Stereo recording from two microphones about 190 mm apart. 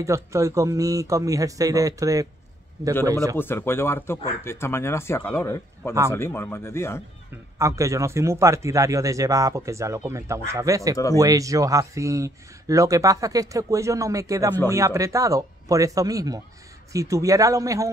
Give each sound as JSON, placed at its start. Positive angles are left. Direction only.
{"t": 0.0, "sound": "a man's voice", "side_deg": -15}
{"t": 3.3, "sound": "speech", "side_deg": 10}
{"t": 7.5, "sound": "a man's voice", "side_deg": -15}